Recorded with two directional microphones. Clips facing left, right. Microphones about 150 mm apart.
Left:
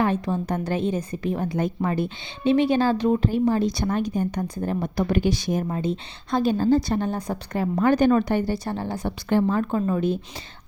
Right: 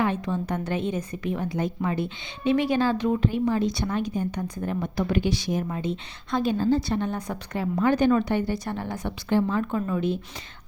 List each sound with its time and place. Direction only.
0.0 s a woman's voice: 40° left (ahead or behind)
2.4 s a woman's voice: 30° left (ahead or behind)
9.3 s a woman's voice: 45° left (ahead or behind)